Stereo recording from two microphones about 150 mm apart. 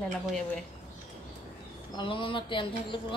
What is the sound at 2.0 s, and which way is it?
Speech, 35° left (ahead or behind).